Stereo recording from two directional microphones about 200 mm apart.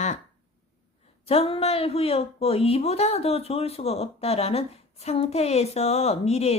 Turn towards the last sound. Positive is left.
turn(degrees=30)  # may be behind; listen again after turning